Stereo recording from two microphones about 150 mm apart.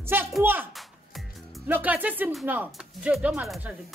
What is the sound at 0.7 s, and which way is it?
Music, centre (ahead or behind).